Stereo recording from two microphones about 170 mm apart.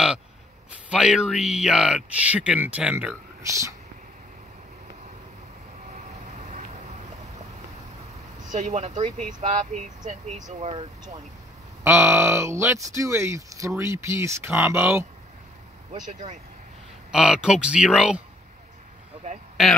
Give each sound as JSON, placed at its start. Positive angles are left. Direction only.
{"t": 0.7, "sound": "speech", "side_deg": -5}
{"t": 8.5, "sound": "speech", "side_deg": -45}
{"t": 11.8, "sound": "speech", "side_deg": -15}
{"t": 17.1, "sound": "speech", "side_deg": -5}